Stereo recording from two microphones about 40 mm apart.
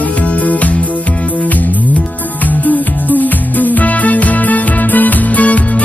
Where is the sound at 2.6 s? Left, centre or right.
Left.